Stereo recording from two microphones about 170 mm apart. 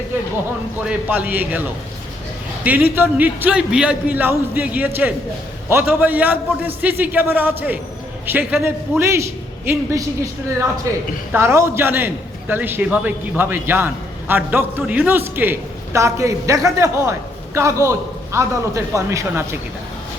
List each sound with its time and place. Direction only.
0.9 s a man's voice: 10° right (ahead or behind)
2.6 s a man's voice: 10° right (ahead or behind)
10.9 s a man's voice: 20° right (ahead or behind)